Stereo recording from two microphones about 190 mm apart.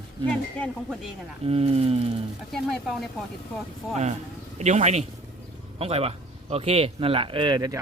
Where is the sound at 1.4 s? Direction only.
30° right (ahead or behind).